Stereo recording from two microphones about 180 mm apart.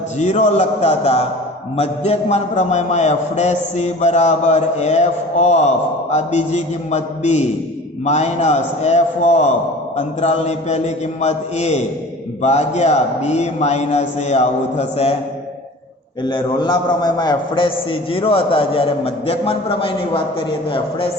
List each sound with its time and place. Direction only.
0.2 s a man's voice: 40° left (ahead or behind)
16.2 s a man's voice: 25° left (ahead or behind)